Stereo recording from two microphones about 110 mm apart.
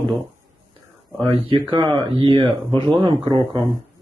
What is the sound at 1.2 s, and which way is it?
Speech, 50° right (ahead or behind).